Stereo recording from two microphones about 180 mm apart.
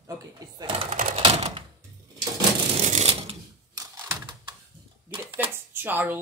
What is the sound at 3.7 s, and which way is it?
Typewriter, 20° right (ahead or behind).